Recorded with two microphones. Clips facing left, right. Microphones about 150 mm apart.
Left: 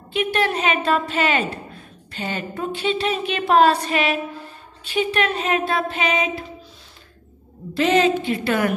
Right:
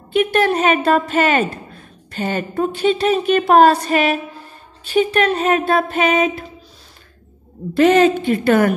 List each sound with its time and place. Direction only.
0.1 s a woman's voice: 50° right (ahead or behind)
7.7 s a woman's voice: 50° right (ahead or behind)